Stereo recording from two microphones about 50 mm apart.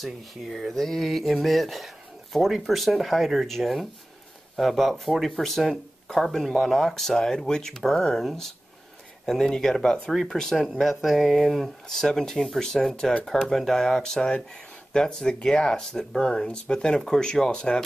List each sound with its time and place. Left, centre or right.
0.0 s speech: centre
9.2 s speech: centre